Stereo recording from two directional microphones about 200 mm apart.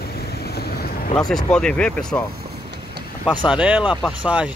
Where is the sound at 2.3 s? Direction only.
55° right (ahead or behind).